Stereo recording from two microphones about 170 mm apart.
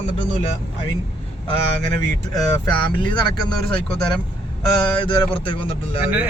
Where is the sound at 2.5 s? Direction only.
20° left (ahead or behind).